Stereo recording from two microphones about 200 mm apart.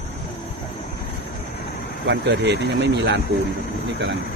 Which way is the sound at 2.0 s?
60° right (ahead or behind).